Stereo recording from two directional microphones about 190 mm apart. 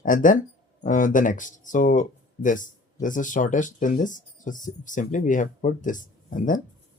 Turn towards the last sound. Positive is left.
turn(degrees=45)  # may be behind; listen again after turning